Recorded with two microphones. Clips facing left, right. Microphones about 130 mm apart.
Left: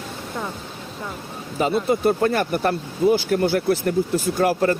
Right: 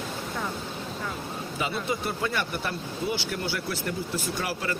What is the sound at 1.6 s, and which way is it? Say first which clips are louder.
Speech: left 11 dB; 45° left (ahead or behind).